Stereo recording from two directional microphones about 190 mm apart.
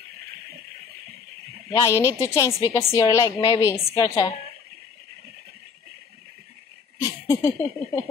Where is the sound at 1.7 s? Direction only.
15° left (ahead or behind).